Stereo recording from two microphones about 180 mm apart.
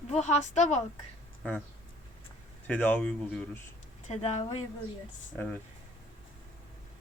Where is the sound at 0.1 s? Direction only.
40° left (ahead or behind).